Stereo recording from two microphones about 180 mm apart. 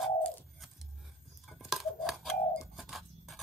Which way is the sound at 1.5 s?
Centre (ahead or behind).